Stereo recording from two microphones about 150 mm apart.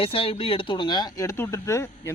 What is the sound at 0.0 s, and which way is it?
Speech, 35° left (ahead or behind).